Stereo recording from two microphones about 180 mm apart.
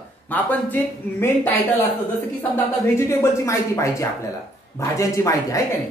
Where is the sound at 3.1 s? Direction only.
15° left (ahead or behind).